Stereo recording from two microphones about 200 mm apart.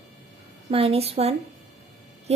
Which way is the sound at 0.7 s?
30° right (ahead or behind).